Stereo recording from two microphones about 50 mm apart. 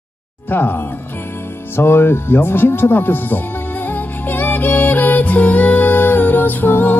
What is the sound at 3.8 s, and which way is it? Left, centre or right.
Music, left.